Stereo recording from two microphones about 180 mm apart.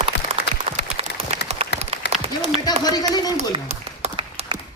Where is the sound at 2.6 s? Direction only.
20° left (ahead or behind).